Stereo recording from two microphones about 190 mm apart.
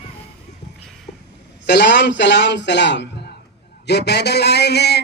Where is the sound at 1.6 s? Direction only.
65° left (ahead or behind).